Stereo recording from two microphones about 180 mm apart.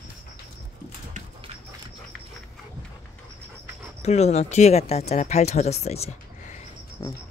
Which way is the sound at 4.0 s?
35° left (ahead or behind).